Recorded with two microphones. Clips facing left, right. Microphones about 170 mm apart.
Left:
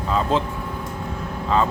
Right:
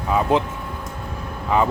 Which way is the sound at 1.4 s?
15° right (ahead or behind).